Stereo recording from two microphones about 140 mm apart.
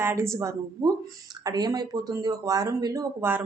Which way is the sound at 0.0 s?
20° right (ahead or behind).